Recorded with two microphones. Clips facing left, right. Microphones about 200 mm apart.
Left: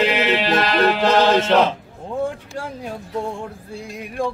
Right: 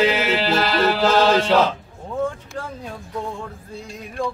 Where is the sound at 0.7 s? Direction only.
15° left (ahead or behind).